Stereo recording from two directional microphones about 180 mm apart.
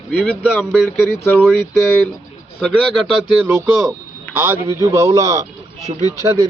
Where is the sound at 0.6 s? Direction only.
Centre (ahead or behind).